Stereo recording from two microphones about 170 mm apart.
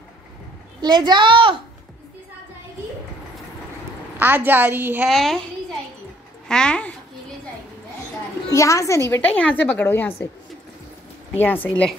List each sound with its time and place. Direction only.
0.7 s a child's voice: 25° right (ahead or behind)
4.2 s a woman's voice: 10° right (ahead or behind)
5.0 s speech: centre (ahead or behind)
8.5 s a woman's voice: 20° left (ahead or behind)
11.3 s a woman's voice: 10° left (ahead or behind)